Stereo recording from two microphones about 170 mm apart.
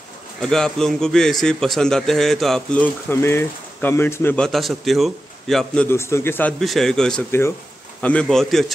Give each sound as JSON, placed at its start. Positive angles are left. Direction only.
{"t": 0.4, "sound": "a man's voice", "side_deg": 5}
{"t": 4.5, "sound": "a man's voice", "side_deg": 0}
{"t": 5.9, "sound": "a man's voice", "side_deg": 15}
{"t": 6.6, "sound": "a man's voice", "side_deg": 0}